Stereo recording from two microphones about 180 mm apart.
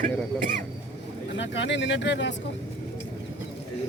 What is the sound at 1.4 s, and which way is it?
Speech, 80° left.